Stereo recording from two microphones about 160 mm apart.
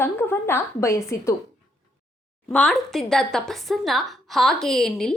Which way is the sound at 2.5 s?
10° left (ahead or behind).